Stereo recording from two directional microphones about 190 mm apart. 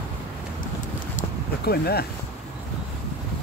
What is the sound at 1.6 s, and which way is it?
Speech, 55° left (ahead or behind).